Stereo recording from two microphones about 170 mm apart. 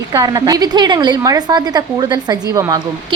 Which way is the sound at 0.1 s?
20° right (ahead or behind).